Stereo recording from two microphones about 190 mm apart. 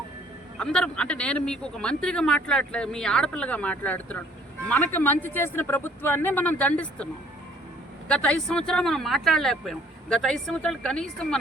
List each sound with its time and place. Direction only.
0.6 s speech: 5° left (ahead or behind)